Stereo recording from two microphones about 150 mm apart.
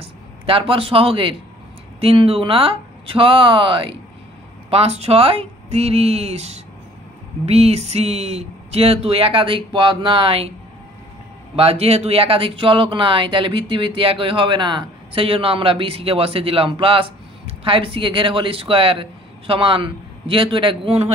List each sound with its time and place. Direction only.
0.0 s speech: 35° right (ahead or behind)
11.5 s speech: 40° right (ahead or behind)